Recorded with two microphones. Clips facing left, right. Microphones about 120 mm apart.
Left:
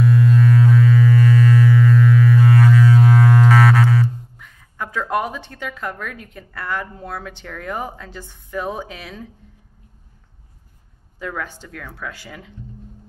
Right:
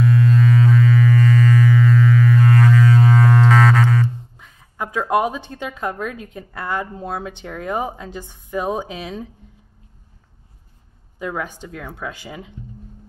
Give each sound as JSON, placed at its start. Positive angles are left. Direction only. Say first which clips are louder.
{"t": 0.0, "sound": "a sound", "louder": "left 1 dB", "side_deg": 5}
{"t": 4.4, "sound": "a woman's voice", "louder": "right 4 dB", "side_deg": -25}
{"t": 11.1, "sound": "speech", "louder": "right 2 dB", "side_deg": -20}